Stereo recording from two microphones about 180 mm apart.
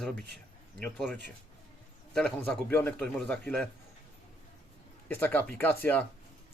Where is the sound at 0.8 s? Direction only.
5° left (ahead or behind).